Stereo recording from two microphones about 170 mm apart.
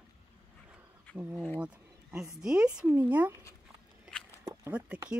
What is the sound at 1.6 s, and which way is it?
Speech, 5° right (ahead or behind).